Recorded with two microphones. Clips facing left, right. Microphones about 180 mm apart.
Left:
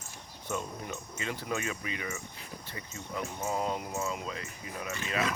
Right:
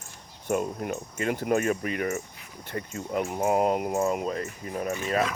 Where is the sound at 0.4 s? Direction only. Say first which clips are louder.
Right 9 dB; 55° right (ahead or behind).